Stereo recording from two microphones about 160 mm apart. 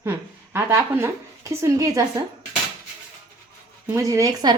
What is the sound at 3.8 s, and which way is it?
Speech, 20° right (ahead or behind).